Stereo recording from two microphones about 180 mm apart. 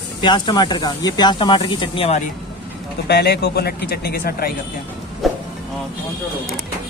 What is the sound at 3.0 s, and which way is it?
Speech, 65° left (ahead or behind).